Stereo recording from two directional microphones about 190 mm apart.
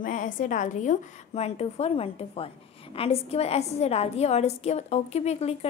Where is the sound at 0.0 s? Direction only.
45° left (ahead or behind).